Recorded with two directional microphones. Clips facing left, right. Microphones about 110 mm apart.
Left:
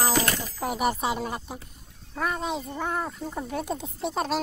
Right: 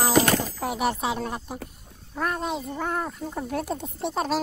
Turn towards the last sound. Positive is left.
turn(degrees=0)  # may be behind; listen again after turning